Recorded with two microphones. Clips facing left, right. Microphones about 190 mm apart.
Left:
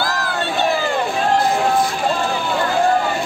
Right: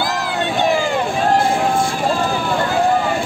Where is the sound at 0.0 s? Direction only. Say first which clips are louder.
Right 2 dB; 20° right (ahead or behind).